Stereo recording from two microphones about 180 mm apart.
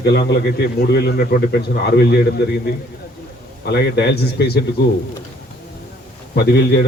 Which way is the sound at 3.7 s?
65° left (ahead or behind).